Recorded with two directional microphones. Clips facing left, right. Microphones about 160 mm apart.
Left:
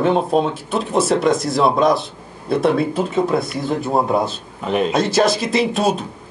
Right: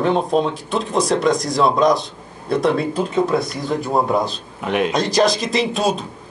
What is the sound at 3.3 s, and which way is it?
Speech, 25° left (ahead or behind).